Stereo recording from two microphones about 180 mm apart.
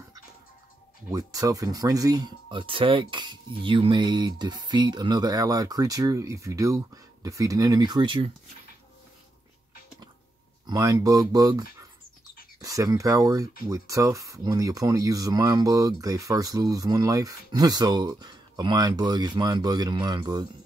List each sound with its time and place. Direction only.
1.1 s speech: 20° right (ahead or behind)
10.7 s speech: 20° right (ahead or behind)
12.6 s speech: 20° right (ahead or behind)